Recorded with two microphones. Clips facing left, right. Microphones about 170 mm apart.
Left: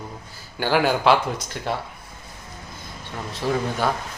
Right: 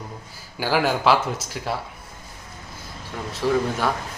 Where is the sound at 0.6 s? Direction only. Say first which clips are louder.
Left 1 dB; centre (ahead or behind).